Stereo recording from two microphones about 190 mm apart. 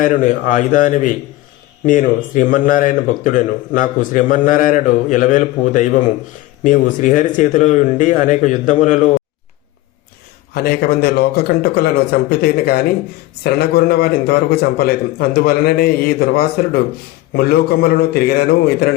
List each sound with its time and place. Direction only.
0.0 s a man's voice: 45° left (ahead or behind)
10.5 s a man's voice: 55° left (ahead or behind)